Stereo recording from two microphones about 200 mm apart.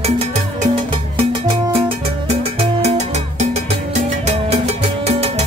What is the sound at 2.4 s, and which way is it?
Music, 30° right (ahead or behind).